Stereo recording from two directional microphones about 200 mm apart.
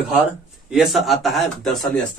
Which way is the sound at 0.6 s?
Centre (ahead or behind).